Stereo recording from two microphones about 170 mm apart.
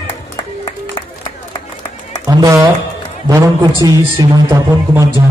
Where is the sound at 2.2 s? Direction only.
20° right (ahead or behind).